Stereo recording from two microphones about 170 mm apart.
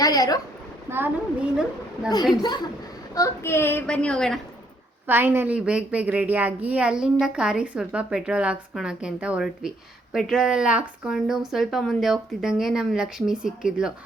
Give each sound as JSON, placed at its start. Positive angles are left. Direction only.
{"t": 0.0, "sound": "a woman's voice", "side_deg": 20}
{"t": 0.9, "sound": "a woman's voice", "side_deg": -10}
{"t": 3.2, "sound": "a child's voice", "side_deg": 15}
{"t": 5.0, "sound": "a woman's voice", "side_deg": -15}